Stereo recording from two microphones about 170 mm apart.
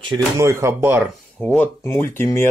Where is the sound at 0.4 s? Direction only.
15° right (ahead or behind).